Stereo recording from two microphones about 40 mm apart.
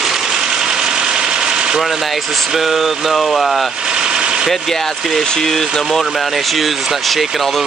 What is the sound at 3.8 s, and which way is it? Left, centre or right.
Vehicle, right.